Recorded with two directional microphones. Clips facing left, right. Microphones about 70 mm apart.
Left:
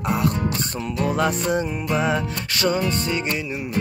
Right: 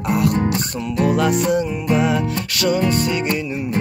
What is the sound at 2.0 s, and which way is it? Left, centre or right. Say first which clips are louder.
Music: right 4 dB; left.